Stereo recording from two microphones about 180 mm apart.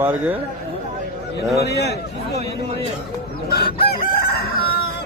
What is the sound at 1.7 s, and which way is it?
Speech, 65° left (ahead or behind).